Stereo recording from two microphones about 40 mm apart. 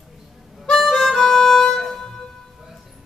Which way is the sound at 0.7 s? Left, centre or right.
Centre.